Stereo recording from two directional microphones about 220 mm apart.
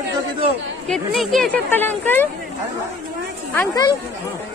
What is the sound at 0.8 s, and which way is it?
Speech, centre (ahead or behind).